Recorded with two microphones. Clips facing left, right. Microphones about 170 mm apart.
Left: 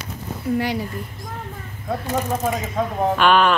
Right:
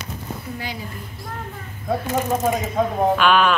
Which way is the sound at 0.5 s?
70° left (ahead or behind).